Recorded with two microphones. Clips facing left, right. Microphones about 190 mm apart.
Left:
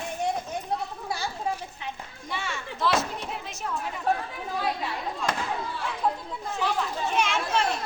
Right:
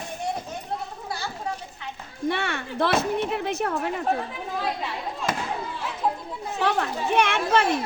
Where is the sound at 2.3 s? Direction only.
60° right (ahead or behind).